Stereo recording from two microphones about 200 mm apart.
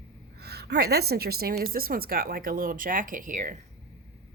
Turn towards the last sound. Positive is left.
turn(degrees=-40)  # may be behind; listen again after turning